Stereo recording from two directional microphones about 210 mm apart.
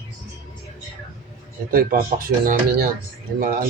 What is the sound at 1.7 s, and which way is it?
Speech, 45° right (ahead or behind).